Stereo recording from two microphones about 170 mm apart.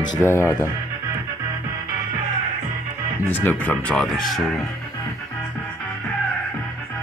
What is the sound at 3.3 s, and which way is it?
Speech, 10° left (ahead or behind).